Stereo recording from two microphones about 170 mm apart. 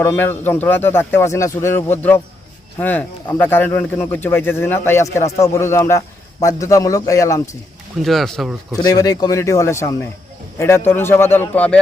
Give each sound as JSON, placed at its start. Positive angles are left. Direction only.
{"t": 0.0, "sound": "a man's voice", "side_deg": 15}
{"t": 8.0, "sound": "speech", "side_deg": 0}
{"t": 8.7, "sound": "speech", "side_deg": 20}